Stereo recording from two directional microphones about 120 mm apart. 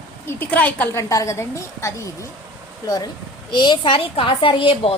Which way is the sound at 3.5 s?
40° left (ahead or behind).